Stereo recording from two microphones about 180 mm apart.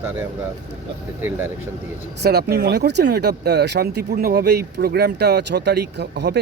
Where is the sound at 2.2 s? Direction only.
60° right (ahead or behind).